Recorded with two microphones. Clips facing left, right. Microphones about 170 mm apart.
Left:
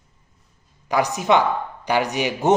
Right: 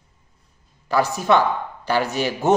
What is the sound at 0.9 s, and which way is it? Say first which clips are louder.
Speech: even; 20° left (ahead or behind).